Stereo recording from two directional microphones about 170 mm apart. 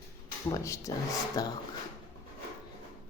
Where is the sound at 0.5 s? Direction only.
20° left (ahead or behind).